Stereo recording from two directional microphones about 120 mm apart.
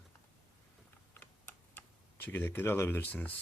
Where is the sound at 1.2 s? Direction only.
15° left (ahead or behind).